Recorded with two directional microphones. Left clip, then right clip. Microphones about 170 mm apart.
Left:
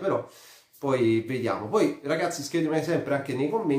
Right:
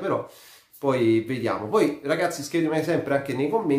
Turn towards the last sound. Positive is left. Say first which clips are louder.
# right 3 dB
turn(degrees=-15)  # may be behind; listen again after turning